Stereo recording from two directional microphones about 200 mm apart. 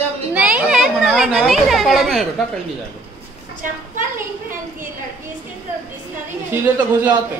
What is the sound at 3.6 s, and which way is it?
A woman's voice, 40° right (ahead or behind).